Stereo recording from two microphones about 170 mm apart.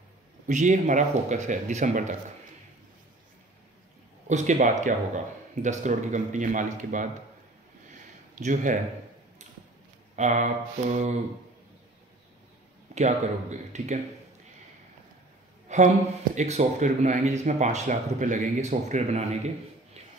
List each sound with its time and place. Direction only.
0.5 s speech: 45° right (ahead or behind)
4.3 s speech: 45° right (ahead or behind)
8.4 s speech: 45° right (ahead or behind)
10.1 s speech: 45° right (ahead or behind)
12.9 s speech: 45° right (ahead or behind)
15.7 s speech: 45° right (ahead or behind)